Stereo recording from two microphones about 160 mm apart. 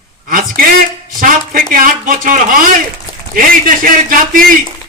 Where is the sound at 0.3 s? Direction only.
60° right (ahead or behind).